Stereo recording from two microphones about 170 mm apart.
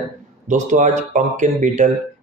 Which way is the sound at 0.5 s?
45° right (ahead or behind).